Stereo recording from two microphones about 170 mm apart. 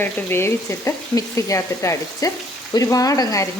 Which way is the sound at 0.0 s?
15° left (ahead or behind).